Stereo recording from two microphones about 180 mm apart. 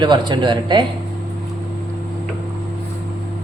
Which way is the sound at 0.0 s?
25° right (ahead or behind).